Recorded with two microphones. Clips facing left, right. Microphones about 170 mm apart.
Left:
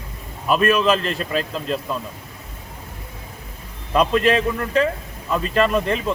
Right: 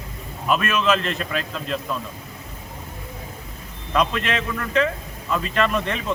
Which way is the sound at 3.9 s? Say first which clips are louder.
Left 5 dB; 35° left (ahead or behind).